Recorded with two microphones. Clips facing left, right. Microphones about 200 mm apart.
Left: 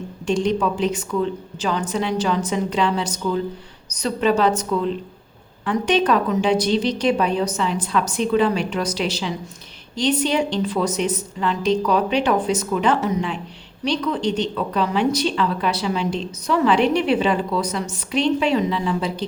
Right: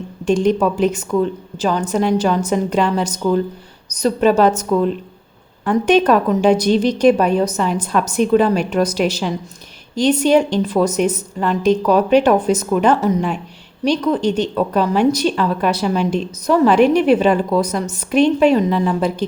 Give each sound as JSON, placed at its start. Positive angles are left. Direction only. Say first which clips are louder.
{"t": 0.3, "sound": "a woman's voice", "louder": "right 5 dB", "side_deg": -45}